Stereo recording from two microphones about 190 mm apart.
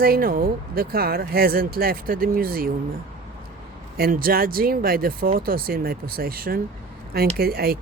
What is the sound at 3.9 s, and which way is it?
Speech, 50° right (ahead or behind).